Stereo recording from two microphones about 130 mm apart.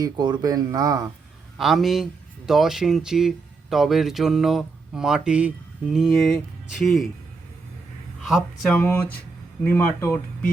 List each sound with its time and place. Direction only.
0.0 s speech: 30° right (ahead or behind)
1.5 s speech: centre (ahead or behind)
8.2 s speech: 5° right (ahead or behind)
8.7 s speech: 10° left (ahead or behind)